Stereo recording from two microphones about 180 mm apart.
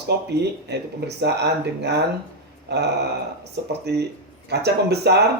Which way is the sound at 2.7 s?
70° right (ahead or behind).